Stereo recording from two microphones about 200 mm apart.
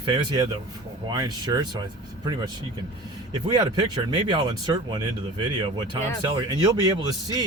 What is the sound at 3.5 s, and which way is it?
Speech, 20° right (ahead or behind).